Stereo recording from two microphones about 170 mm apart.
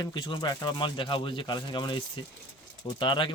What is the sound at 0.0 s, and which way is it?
Speech, 25° left (ahead or behind).